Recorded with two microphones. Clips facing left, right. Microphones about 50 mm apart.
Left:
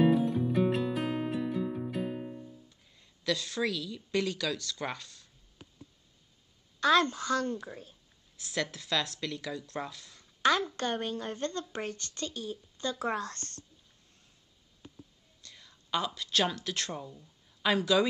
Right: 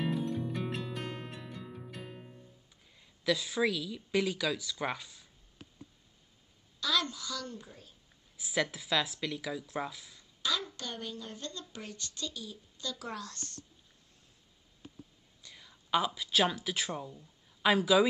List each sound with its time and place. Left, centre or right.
0.0 s music: centre
2.9 s a woman's voice: centre
6.8 s a woman's voice: left
8.4 s speech: centre
10.1 s a woman's voice: left
15.4 s a sound: centre
16.2 s speech: centre